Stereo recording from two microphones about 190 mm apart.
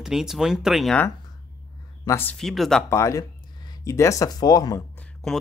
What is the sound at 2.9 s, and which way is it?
Speech, 15° left (ahead or behind).